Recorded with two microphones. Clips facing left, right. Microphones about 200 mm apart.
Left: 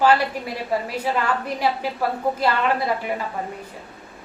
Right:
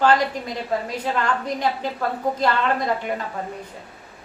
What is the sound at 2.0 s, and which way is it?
Speech, 10° left (ahead or behind).